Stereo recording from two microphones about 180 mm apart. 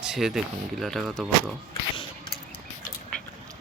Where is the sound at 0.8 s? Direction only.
Centre (ahead or behind).